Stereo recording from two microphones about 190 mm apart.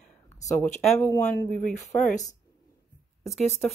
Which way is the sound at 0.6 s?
5° left (ahead or behind).